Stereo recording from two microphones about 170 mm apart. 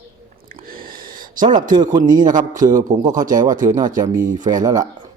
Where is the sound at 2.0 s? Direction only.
50° right (ahead or behind).